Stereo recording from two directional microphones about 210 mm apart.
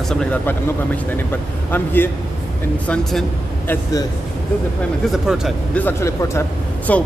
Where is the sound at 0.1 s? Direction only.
5° left (ahead or behind).